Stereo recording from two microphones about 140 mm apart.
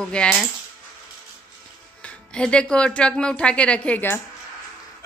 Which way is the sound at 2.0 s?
5° left (ahead or behind).